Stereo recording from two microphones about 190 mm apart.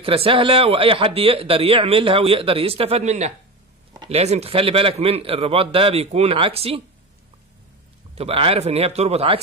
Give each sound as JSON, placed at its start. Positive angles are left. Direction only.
{"t": 0.0, "sound": "a man's voice", "side_deg": -30}
{"t": 8.1, "sound": "a man's voice", "side_deg": -30}